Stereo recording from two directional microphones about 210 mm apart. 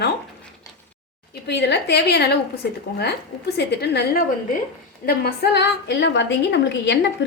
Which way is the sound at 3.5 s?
50° left (ahead or behind).